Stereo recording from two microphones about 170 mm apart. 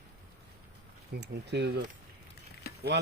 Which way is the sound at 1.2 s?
85° right.